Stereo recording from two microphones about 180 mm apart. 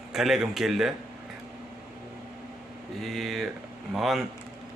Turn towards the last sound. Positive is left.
turn(degrees=0)  # may be behind; listen again after turning